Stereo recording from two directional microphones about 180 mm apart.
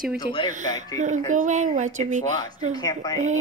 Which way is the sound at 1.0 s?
45° right (ahead or behind).